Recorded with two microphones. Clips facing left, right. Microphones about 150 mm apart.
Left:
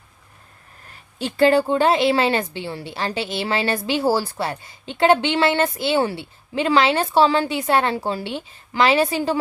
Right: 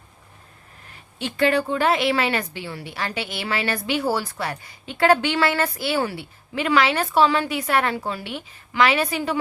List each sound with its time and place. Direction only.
1.2 s a woman's voice: 30° left (ahead or behind)